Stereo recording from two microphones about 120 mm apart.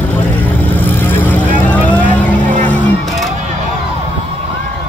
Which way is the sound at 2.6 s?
10° left (ahead or behind).